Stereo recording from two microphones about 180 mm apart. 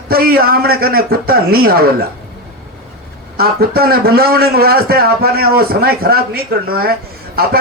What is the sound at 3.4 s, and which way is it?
A man's voice, 60° right (ahead or behind).